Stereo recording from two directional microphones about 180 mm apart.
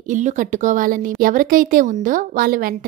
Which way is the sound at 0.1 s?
45° right (ahead or behind).